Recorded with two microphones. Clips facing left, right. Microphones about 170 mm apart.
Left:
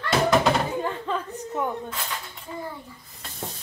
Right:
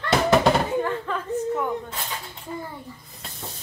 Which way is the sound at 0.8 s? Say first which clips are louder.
Right 2 dB; 20° left (ahead or behind).